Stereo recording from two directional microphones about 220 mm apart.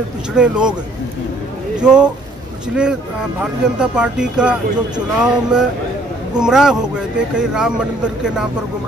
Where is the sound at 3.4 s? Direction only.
5° right (ahead or behind).